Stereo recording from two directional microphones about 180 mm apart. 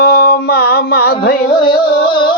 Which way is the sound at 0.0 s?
60° left (ahead or behind).